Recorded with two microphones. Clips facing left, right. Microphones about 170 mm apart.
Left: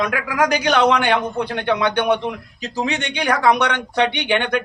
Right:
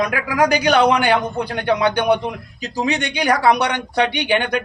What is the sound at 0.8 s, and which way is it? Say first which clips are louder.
Speech: right 1 dB; 10° right (ahead or behind).